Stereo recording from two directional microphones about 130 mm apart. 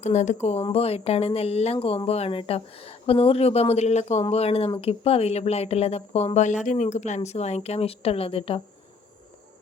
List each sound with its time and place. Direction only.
0.0 s speech: 65° left (ahead or behind)
0.7 s speech: 50° left (ahead or behind)